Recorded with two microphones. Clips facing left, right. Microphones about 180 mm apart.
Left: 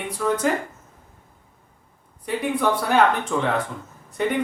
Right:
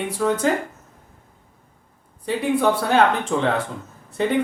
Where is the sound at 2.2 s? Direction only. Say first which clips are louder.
Right 3 dB; 30° right (ahead or behind).